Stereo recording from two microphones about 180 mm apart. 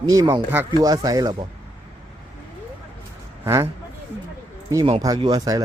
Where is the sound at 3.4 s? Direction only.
15° right (ahead or behind).